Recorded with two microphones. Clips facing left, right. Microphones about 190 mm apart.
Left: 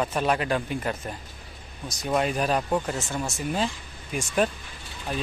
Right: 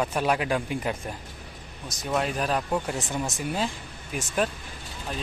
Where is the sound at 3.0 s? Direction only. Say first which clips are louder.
Right 1 dB; 20° right (ahead or behind).